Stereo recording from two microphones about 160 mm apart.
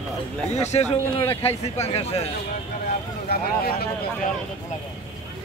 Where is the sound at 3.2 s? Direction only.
75° left (ahead or behind).